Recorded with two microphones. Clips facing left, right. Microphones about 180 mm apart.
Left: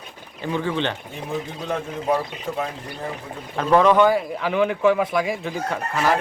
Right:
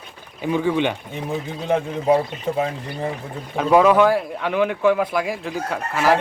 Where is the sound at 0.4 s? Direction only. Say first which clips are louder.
Right 4 dB; 15° right (ahead or behind).